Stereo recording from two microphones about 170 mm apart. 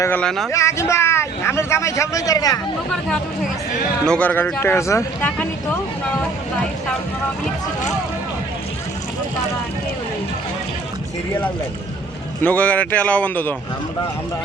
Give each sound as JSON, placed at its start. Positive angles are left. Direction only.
{"t": 0.0, "sound": "speech", "side_deg": 10}
{"t": 0.5, "sound": "speech", "side_deg": 15}
{"t": 4.0, "sound": "speech", "side_deg": 5}
{"t": 12.4, "sound": "speech", "side_deg": 10}